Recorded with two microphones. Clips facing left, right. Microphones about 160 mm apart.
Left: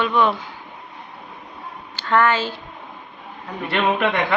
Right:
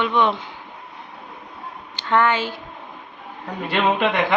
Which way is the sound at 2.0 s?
20° right (ahead or behind).